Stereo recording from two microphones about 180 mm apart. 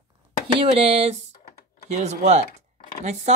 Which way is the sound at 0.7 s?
35° right (ahead or behind).